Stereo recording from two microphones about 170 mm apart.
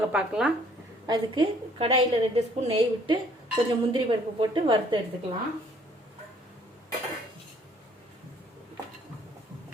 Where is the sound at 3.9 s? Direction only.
30° right (ahead or behind).